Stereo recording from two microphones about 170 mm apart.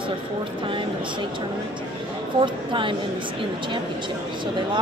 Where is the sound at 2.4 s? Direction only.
30° right (ahead or behind).